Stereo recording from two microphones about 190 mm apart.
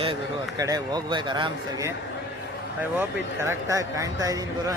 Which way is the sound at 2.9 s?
15° right (ahead or behind).